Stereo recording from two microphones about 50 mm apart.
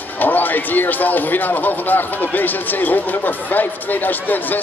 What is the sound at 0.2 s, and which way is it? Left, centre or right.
Speech, left.